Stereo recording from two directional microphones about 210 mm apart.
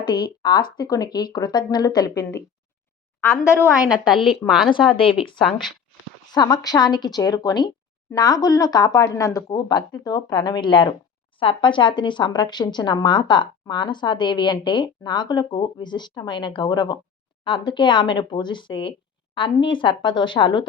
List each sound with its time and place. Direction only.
0.0 s a woman's voice: 20° left (ahead or behind)
4.3 s speech: centre (ahead or behind)
6.3 s a woman's voice: 20° left (ahead or behind)